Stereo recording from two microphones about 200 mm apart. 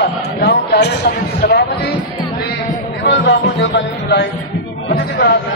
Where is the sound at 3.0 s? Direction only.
60° left (ahead or behind).